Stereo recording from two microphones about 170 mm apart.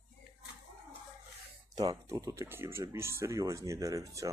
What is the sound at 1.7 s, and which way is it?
Speech, 25° right (ahead or behind).